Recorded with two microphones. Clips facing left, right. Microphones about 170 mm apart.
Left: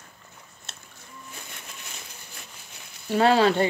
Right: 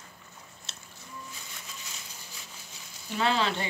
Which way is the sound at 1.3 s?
60° left (ahead or behind).